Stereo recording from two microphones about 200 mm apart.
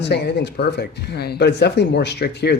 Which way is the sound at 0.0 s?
55° left (ahead or behind).